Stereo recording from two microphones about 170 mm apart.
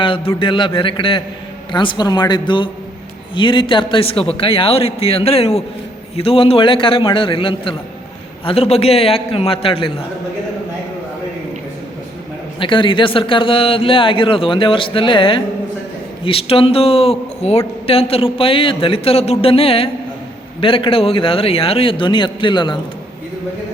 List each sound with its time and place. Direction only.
0.0 s a man's voice: 30° left (ahead or behind)
12.5 s a man's voice: 30° left (ahead or behind)